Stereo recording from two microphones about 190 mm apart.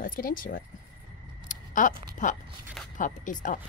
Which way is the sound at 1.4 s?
45° left (ahead or behind).